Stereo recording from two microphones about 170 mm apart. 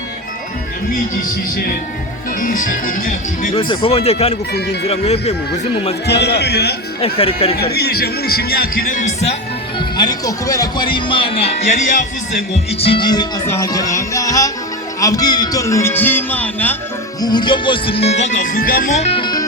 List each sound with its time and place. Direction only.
2.4 s speech: 50° left (ahead or behind)
3.5 s speech: 30° left (ahead or behind)
4.5 s a man's voice: 75° left (ahead or behind)
4.9 s speech: 40° left (ahead or behind)
6.1 s a man's voice: 80° left
7.0 s speech: 35° left (ahead or behind)
7.5 s speech: 70° left (ahead or behind); by 9.3 s 45° left (ahead or behind)
9.7 s speech: 25° left (ahead or behind); by 12.0 s 45° left (ahead or behind)
13.0 s speech: 25° left (ahead or behind)
17.2 s speech: 25° left (ahead or behind); by 18.9 s 55° left (ahead or behind)
18.9 s music: 35° left (ahead or behind)